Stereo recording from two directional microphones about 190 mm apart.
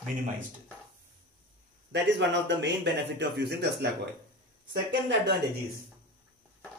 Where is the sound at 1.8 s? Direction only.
70° right (ahead or behind).